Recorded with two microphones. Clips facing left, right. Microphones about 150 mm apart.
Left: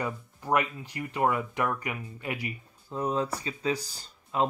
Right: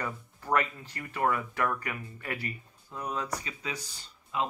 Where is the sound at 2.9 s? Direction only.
30° left (ahead or behind).